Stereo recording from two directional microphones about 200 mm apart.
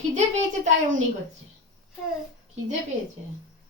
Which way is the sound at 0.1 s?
35° right (ahead or behind).